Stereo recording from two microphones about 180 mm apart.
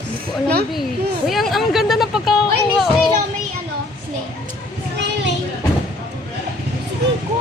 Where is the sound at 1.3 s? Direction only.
Centre (ahead or behind).